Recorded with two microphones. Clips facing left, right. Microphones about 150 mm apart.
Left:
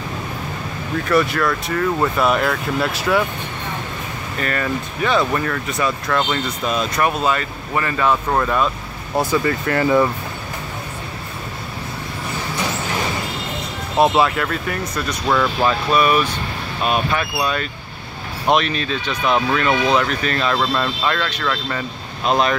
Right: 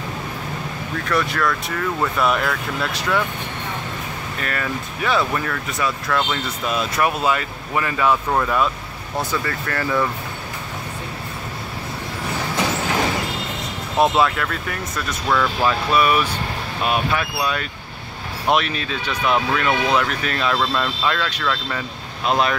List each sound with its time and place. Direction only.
1.0 s speech: 5° left (ahead or behind)
4.4 s speech: centre (ahead or behind)
9.2 s speech: 15° left (ahead or behind)
13.9 s speech: 5° left (ahead or behind)
15.2 s speech: 15° left (ahead or behind)
15.9 s speech: 5° right (ahead or behind)
20.5 s speech: 5° left (ahead or behind)